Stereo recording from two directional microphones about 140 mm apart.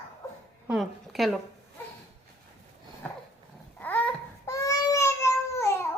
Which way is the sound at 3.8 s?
10° left (ahead or behind).